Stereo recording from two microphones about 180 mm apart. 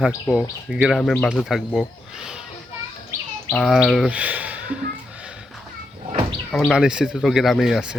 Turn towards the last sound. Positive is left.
turn(degrees=-5)  # may be behind; listen again after turning